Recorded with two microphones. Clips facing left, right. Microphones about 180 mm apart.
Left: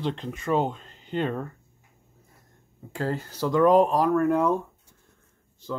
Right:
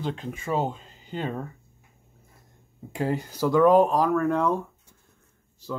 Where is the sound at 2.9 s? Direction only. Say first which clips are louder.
Right 2 dB; 15° right (ahead or behind); by 4.6 s 5° left (ahead or behind).